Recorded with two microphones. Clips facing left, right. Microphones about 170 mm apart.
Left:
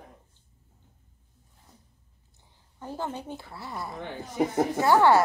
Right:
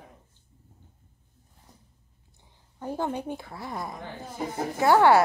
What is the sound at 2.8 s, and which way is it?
A woman's voice, 15° right (ahead or behind).